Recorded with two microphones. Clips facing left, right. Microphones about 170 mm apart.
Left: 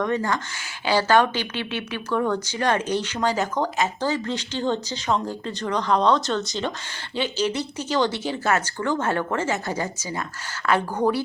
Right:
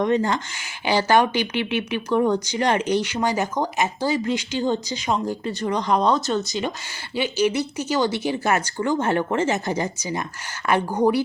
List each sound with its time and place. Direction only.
0.0 s speech: 20° right (ahead or behind)